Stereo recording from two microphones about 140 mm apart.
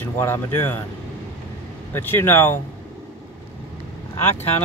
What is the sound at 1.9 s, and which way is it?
Speech, 15° left (ahead or behind).